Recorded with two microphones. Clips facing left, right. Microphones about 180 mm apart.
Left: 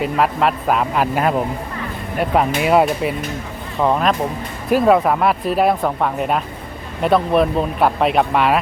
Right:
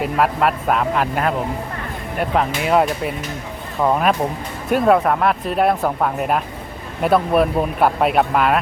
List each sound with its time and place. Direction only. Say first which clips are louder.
0.0 s speech: left 1 dB; centre (ahead or behind)